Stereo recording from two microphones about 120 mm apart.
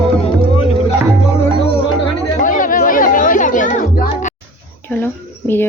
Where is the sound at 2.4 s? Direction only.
90° left.